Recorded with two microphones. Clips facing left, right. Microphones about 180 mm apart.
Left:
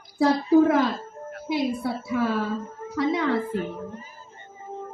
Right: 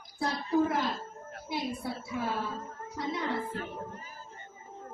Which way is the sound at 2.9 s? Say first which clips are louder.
Left 10 dB; 90° left.